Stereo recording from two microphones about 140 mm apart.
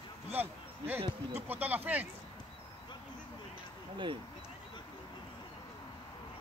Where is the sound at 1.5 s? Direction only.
10° right (ahead or behind).